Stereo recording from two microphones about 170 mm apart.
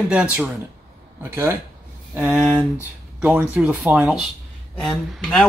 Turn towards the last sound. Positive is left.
turn(degrees=5)  # may be behind; listen again after turning